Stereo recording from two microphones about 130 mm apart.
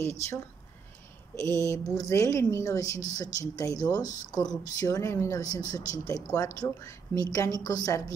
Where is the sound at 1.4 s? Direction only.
25° left (ahead or behind).